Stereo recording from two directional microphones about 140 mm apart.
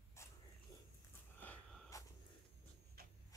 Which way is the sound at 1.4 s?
5° left (ahead or behind).